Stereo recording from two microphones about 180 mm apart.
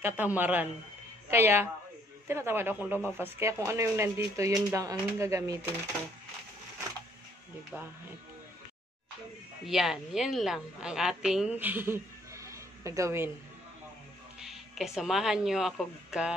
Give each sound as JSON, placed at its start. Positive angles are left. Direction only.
{"t": 0.0, "sound": "speech", "side_deg": -10}
{"t": 7.7, "sound": "speech", "side_deg": -5}
{"t": 9.7, "sound": "a woman's voice", "side_deg": 0}
{"t": 14.4, "sound": "speech", "side_deg": 0}